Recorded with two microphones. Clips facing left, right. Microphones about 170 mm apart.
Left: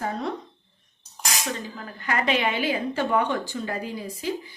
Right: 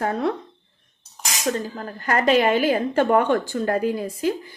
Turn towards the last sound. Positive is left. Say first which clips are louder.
# right 7 dB
turn(degrees=-55)  # may be behind; listen again after turning